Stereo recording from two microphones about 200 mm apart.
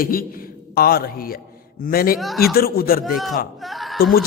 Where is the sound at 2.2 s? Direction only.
Centre (ahead or behind).